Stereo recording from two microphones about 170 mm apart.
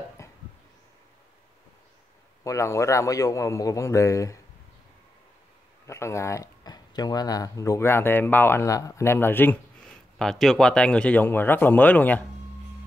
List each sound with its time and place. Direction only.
0.2 s a sound: 20° left (ahead or behind)
2.4 s a man's voice: 20° left (ahead or behind)
5.9 s speech: 15° left (ahead or behind)